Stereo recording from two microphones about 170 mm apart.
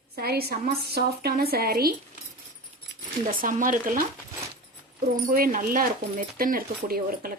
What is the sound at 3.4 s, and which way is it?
Speech, 50° right (ahead or behind).